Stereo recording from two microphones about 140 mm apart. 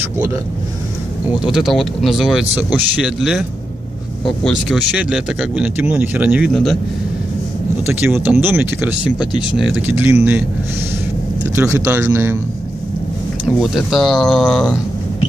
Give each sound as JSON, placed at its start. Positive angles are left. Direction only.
{"t": 1.4, "sound": "speech", "side_deg": 0}
{"t": 4.5, "sound": "speech", "side_deg": 0}
{"t": 6.5, "sound": "speech", "side_deg": 5}
{"t": 7.8, "sound": "speech", "side_deg": -15}
{"t": 9.2, "sound": "speech", "side_deg": 35}
{"t": 9.8, "sound": "speech", "side_deg": -15}
{"t": 11.5, "sound": "speech", "side_deg": -20}
{"t": 13.6, "sound": "speech", "side_deg": 0}